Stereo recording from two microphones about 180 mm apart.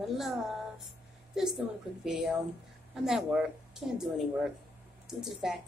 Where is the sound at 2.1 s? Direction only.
Centre (ahead or behind).